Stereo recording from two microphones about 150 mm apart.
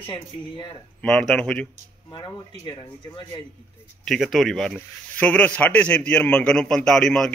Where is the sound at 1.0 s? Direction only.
5° left (ahead or behind).